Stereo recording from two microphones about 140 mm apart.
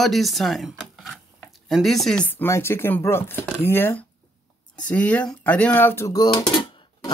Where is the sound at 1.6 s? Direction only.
Centre (ahead or behind).